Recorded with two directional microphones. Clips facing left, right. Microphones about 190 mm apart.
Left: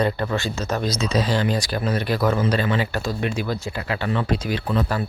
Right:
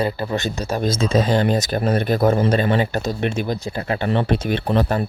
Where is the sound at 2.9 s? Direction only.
20° right (ahead or behind).